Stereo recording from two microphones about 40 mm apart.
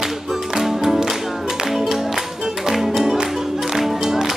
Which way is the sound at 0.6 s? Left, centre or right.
Centre.